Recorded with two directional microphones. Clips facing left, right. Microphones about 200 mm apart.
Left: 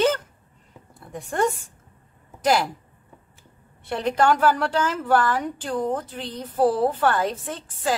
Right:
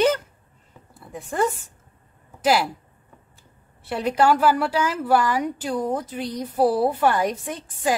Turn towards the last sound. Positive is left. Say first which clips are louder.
# right 2 dB
turn(degrees=-15)  # may be behind; listen again after turning